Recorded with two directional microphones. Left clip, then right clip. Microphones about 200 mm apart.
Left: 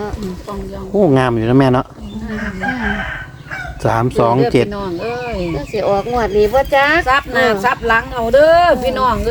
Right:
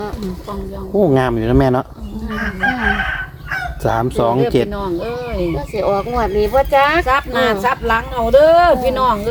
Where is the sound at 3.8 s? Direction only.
20° left (ahead or behind).